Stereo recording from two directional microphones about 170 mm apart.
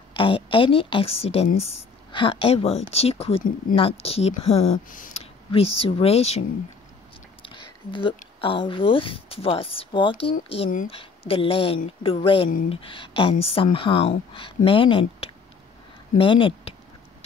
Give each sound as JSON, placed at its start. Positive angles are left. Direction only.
{"t": 0.1, "sound": "speech", "side_deg": 30}
{"t": 4.8, "sound": "speech", "side_deg": 50}
{"t": 7.4, "sound": "a sound", "side_deg": 30}
{"t": 8.4, "sound": "speech", "side_deg": 30}